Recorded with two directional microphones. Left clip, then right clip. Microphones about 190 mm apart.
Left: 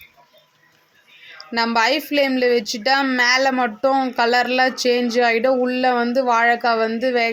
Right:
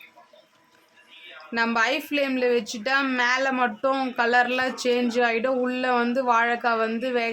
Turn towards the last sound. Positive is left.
turn(degrees=15)  # may be behind; listen again after turning